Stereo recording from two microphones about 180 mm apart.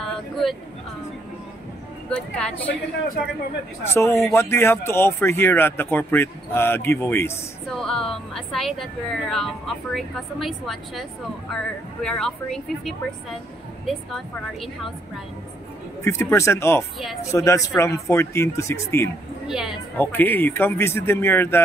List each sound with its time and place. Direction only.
0.0 s vehicle: centre (ahead or behind)
2.0 s speech: 5° left (ahead or behind)
3.9 s speech: 15° left (ahead or behind)
7.7 s speech: 5° left (ahead or behind)
16.0 s speech: 15° left (ahead or behind)
19.4 s a woman's voice: 5° right (ahead or behind)
20.0 s speech: 10° left (ahead or behind)